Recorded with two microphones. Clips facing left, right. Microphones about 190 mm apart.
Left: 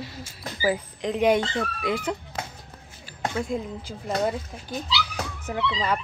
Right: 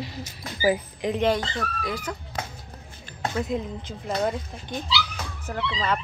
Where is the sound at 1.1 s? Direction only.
20° left (ahead or behind).